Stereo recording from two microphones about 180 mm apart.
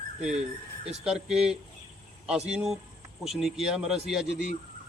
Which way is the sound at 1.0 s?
5° right (ahead or behind).